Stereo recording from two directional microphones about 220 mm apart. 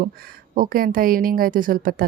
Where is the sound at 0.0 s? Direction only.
40° right (ahead or behind).